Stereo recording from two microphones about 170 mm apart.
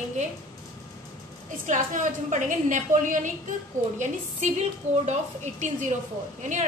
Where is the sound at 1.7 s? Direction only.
45° right (ahead or behind).